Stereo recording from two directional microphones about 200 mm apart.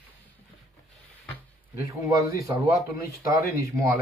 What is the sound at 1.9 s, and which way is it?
Speech, 15° right (ahead or behind).